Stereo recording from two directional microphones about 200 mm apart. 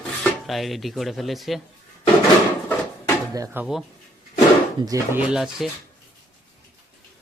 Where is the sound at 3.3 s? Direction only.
15° right (ahead or behind).